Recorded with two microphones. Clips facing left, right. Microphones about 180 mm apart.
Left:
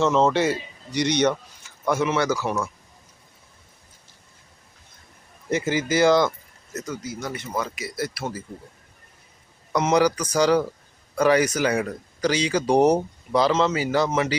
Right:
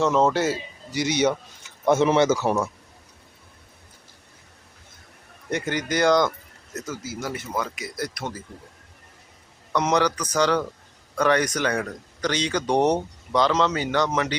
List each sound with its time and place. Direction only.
0.0 s speech: 5° right (ahead or behind)
1.8 s speech: 25° right (ahead or behind)
5.5 s speech: 5° left (ahead or behind)
9.7 s speech: 10° left (ahead or behind)